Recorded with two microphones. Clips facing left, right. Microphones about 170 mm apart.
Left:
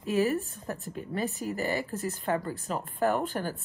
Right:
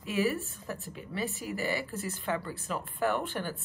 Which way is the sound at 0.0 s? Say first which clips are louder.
Left 3 dB; 40° left (ahead or behind).